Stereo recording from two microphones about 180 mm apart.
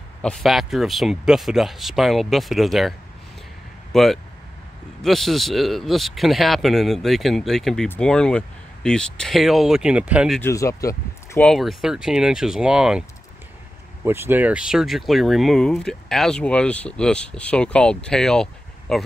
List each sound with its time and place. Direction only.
0.2 s a man's voice: centre (ahead or behind)
3.9 s a man's voice: centre (ahead or behind)
10.4 s speech: 15° left (ahead or behind)
11.4 s a man's voice: centre (ahead or behind)
14.0 s a man's voice: 15° right (ahead or behind); by 19.0 s 5° left (ahead or behind)